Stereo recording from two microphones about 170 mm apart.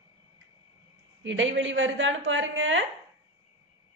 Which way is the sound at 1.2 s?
90° right.